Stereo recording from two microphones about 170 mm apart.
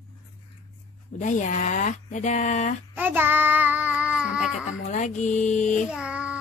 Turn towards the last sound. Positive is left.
turn(degrees=-5)  # may be behind; listen again after turning